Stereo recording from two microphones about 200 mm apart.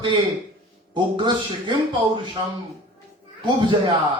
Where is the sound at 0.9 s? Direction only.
25° right (ahead or behind).